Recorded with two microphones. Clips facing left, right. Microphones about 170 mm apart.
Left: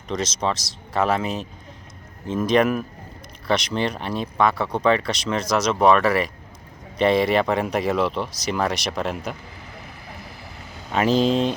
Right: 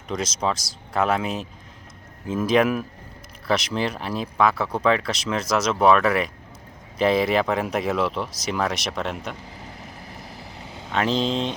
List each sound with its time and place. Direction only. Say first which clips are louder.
0.1 s speech: left 1 dB; centre (ahead or behind)
9.6 s vehicle: right 1 dB; 40° right (ahead or behind)
10.9 s speech: left 4 dB; 5° left (ahead or behind)